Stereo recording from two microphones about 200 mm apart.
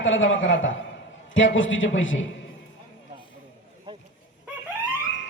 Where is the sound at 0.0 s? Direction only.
70° left (ahead or behind).